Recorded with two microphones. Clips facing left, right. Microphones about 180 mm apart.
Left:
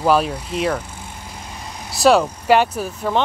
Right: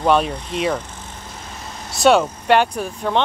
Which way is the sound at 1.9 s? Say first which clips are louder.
Even; centre (ahead or behind).